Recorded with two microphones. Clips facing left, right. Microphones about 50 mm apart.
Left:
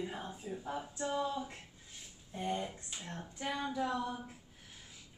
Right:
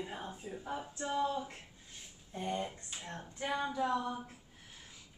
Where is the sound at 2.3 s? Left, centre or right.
Centre.